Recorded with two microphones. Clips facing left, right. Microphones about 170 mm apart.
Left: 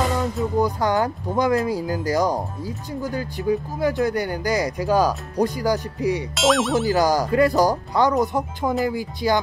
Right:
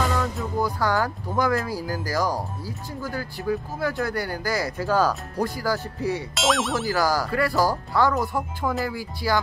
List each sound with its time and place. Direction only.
0.0 s music: 20° left (ahead or behind)
0.6 s speech: 20° left (ahead or behind)
6.3 s speech: centre (ahead or behind)
6.9 s speech: 20° left (ahead or behind)